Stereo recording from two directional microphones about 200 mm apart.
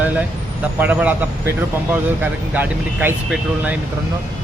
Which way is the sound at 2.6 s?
10° right (ahead or behind).